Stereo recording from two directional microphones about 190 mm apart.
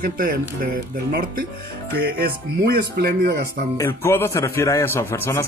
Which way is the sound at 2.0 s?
55° right (ahead or behind).